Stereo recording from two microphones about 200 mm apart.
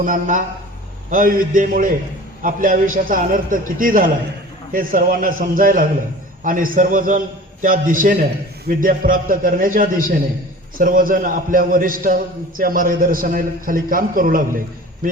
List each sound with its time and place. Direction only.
0.0 s a man's voice: 40° right (ahead or behind)